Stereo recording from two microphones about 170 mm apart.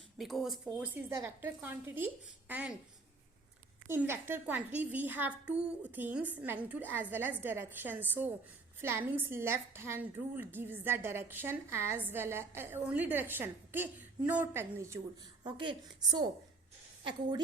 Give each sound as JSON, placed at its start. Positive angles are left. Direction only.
{"t": 0.2, "sound": "a woman's voice", "side_deg": 0}
{"t": 3.8, "sound": "a woman's voice", "side_deg": -15}
{"t": 15.4, "sound": "a woman's voice", "side_deg": -30}